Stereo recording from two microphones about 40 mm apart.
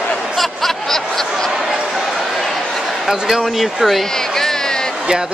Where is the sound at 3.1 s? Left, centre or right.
Centre.